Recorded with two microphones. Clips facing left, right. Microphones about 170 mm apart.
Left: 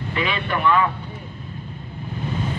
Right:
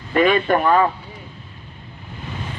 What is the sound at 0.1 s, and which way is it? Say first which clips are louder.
Speech: right 9 dB; 50° right (ahead or behind).